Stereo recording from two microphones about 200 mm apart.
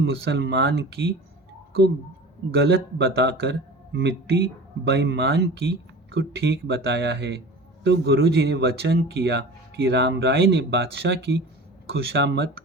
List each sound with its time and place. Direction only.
0.0 s speech: 60° right (ahead or behind)
2.5 s speech: 55° right (ahead or behind)